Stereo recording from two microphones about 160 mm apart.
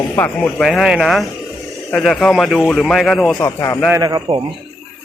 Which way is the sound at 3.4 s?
20° left (ahead or behind).